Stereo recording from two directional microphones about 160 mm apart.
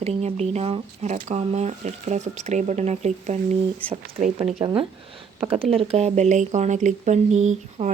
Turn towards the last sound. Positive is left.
turn(degrees=-45)  # may be behind; listen again after turning